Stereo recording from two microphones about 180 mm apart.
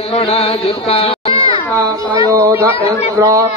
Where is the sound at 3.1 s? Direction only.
20° right (ahead or behind).